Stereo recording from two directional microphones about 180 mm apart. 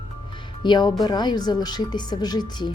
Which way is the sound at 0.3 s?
25° left (ahead or behind).